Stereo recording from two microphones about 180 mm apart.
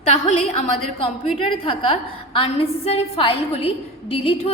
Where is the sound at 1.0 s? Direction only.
30° left (ahead or behind).